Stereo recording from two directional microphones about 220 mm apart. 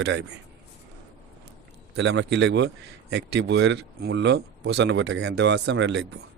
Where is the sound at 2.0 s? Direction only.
55° right (ahead or behind).